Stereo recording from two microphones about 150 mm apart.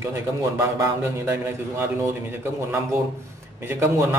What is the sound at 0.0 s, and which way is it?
A man's voice, 20° right (ahead or behind).